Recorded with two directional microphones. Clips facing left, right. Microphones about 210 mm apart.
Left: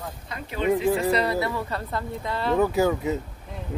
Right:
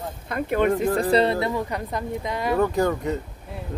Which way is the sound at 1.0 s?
30° right (ahead or behind).